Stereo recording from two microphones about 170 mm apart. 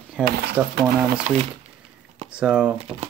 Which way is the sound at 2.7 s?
40° right (ahead or behind).